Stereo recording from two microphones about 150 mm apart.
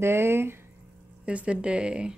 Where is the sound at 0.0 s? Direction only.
15° right (ahead or behind).